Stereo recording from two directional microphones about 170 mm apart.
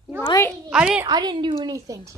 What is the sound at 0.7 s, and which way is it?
Speech, 5° right (ahead or behind).